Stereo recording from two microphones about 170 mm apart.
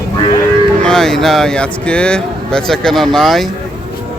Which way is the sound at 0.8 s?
5° left (ahead or behind).